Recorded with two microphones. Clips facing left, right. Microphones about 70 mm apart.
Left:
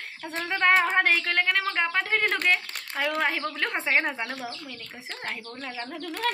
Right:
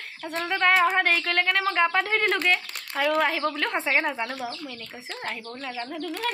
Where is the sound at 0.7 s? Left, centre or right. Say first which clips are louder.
Right 1 dB; left.